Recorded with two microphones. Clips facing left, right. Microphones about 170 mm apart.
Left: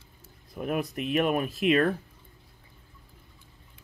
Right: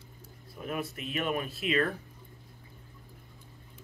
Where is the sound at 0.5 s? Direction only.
55° left (ahead or behind).